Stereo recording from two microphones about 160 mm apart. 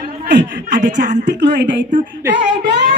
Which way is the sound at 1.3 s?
90° right.